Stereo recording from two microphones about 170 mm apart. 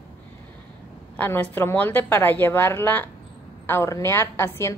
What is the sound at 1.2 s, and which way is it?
A woman's voice, 10° left (ahead or behind).